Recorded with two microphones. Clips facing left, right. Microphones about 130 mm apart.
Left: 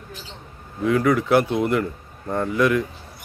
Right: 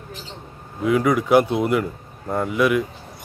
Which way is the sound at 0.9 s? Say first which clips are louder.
Right 1 dB; 15° right (ahead or behind).